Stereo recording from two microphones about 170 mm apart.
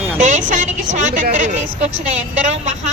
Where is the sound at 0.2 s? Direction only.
45° right (ahead or behind).